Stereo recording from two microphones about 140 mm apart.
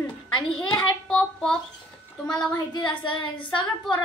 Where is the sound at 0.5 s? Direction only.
5° left (ahead or behind).